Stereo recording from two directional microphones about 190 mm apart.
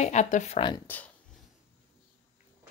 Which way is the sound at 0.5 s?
25° left (ahead or behind).